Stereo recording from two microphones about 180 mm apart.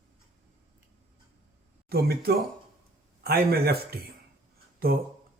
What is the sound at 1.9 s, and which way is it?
Speech, 60° right (ahead or behind).